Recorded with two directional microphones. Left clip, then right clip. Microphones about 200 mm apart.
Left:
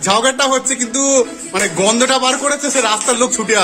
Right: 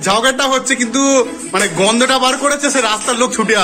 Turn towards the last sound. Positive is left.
turn(degrees=10)  # may be behind; listen again after turning